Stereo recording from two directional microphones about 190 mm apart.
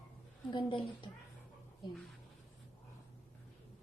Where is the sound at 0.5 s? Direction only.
25° left (ahead or behind).